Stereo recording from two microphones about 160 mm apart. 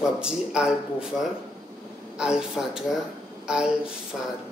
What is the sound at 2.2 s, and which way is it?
Speech, 5° right (ahead or behind).